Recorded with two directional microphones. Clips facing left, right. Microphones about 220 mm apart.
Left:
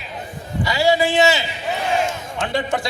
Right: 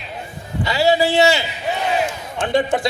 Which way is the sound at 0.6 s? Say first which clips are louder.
Right 1 dB; 20° right (ahead or behind).